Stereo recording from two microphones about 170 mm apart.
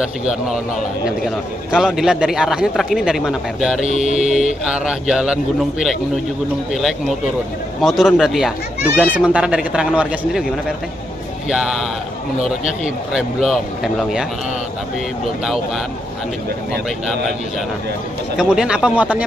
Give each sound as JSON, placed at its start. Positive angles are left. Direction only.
{"t": 1.7, "sound": "speech", "side_deg": -5}
{"t": 3.8, "sound": "mantra", "side_deg": 45}
{"t": 4.2, "sound": "a man's voice", "side_deg": -5}
{"t": 11.4, "sound": "speech", "side_deg": 0}
{"t": 18.4, "sound": "speech", "side_deg": -5}